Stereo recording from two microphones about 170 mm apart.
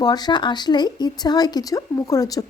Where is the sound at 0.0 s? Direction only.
25° left (ahead or behind).